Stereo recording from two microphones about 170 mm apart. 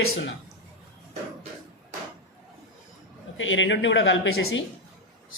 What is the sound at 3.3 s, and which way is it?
Speech, 90° left.